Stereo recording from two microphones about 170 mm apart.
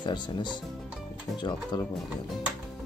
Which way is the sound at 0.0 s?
25° left (ahead or behind).